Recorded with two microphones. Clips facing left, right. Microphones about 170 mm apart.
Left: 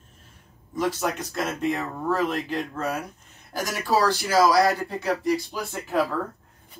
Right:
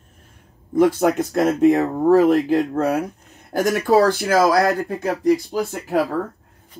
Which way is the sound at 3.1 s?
60° right (ahead or behind).